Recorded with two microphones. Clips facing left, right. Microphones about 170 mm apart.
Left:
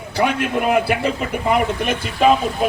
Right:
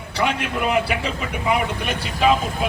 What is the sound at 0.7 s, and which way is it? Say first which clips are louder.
Speech: left 4 dB; 50° left (ahead or behind).